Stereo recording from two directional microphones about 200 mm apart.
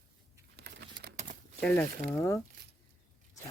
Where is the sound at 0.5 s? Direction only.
55° right (ahead or behind).